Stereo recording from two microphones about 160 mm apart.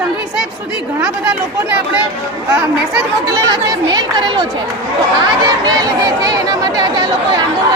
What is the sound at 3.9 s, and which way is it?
Speech, 25° right (ahead or behind).